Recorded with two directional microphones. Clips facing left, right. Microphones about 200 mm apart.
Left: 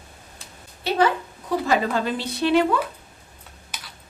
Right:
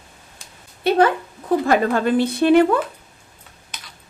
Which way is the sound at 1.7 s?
50° right (ahead or behind).